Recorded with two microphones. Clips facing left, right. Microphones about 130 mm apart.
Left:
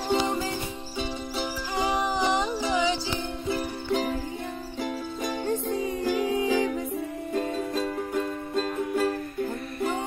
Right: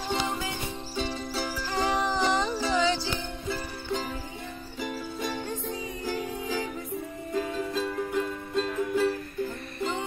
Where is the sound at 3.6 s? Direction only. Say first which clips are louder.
Left 5 dB; 70° left (ahead or behind).